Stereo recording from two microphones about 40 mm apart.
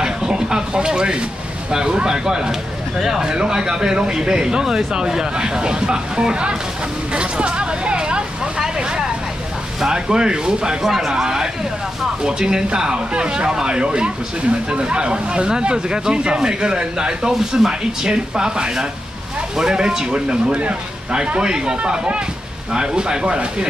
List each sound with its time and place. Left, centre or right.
0.0 s a sound: centre
1.7 s speech: centre
10.8 s speech: centre
17.3 s speech: centre
17.6 s speech: centre
21.4 s speech: centre